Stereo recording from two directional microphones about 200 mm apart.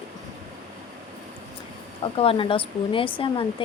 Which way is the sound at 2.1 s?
25° left (ahead or behind).